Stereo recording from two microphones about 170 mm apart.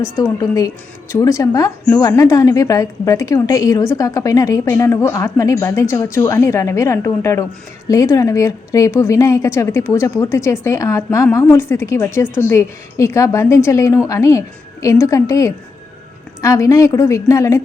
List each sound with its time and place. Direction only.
0.0 s a woman's voice: 20° left (ahead or behind)